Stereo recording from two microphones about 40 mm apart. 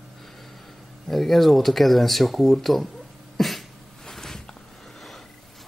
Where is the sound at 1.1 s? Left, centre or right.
Centre.